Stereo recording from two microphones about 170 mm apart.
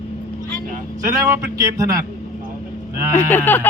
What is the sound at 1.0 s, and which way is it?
Speech, 20° right (ahead or behind).